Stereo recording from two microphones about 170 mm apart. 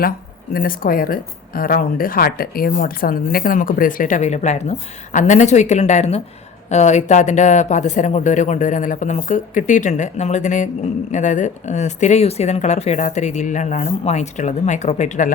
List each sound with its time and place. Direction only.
0.5 s a woman's voice: 60° left (ahead or behind)